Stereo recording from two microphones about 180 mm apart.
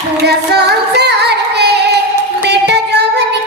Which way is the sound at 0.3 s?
65° right (ahead or behind).